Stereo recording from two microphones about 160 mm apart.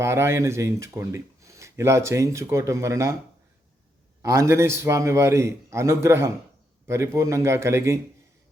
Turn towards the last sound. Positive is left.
turn(degrees=-15)  # may be behind; listen again after turning